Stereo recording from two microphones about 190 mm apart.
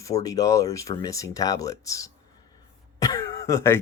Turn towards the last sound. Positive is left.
turn(degrees=15)  # may be behind; listen again after turning